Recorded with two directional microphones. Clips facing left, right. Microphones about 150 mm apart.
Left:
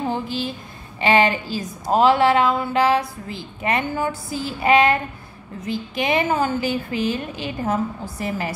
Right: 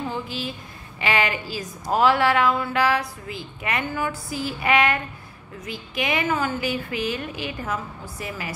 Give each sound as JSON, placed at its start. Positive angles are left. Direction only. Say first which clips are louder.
{"t": 1.0, "sound": "a woman's voice", "louder": "left 6 dB", "side_deg": 30}